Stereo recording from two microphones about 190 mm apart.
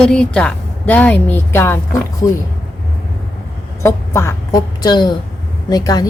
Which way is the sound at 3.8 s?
15° left (ahead or behind).